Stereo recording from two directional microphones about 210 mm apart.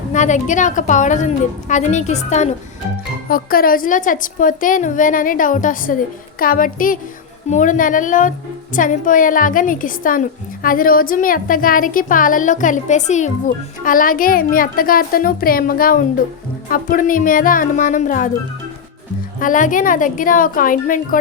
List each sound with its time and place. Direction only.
0.1 s a woman's voice: 35° left (ahead or behind)
3.2 s a woman's voice: 45° left (ahead or behind)
19.4 s a woman's voice: 40° left (ahead or behind)